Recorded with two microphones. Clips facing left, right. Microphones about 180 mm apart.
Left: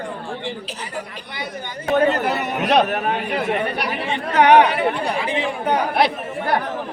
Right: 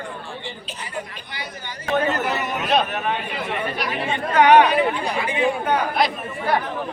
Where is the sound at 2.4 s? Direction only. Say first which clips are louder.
Left 5 dB; 70° left (ahead or behind).